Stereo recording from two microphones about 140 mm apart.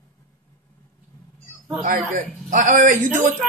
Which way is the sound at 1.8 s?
65° right (ahead or behind).